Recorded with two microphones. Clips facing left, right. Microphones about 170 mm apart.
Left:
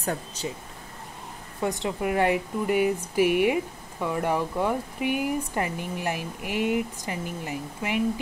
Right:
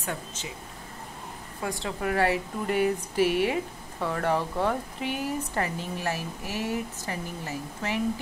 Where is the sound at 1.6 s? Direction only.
20° left (ahead or behind).